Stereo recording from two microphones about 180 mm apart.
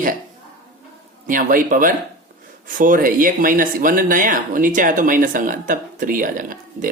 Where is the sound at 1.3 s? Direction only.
50° right (ahead or behind).